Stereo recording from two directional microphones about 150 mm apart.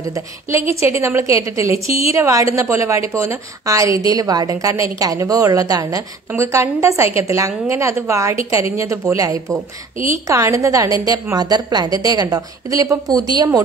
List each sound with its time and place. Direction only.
0.1 s a woman's voice: 20° right (ahead or behind)